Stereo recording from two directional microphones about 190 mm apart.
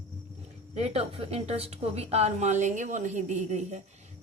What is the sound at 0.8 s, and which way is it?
A woman's voice, 35° right (ahead or behind).